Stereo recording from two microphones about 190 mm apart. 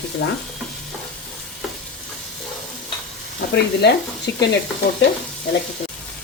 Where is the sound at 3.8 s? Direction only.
65° left (ahead or behind).